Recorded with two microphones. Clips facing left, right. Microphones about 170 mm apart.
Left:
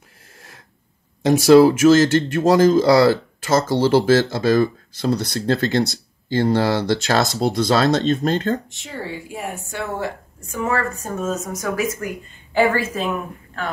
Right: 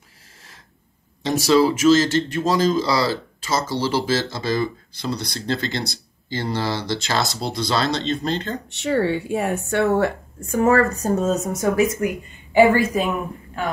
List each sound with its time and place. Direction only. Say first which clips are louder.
1.2 s speech: left 6 dB; 50° left (ahead or behind)
8.6 s speech: right 11 dB; 70° right (ahead or behind)
10.5 s speech: right 6 dB; 45° right (ahead or behind); by 11.9 s 25° right (ahead or behind)
12.5 s speech: right 4 dB; 10° right (ahead or behind)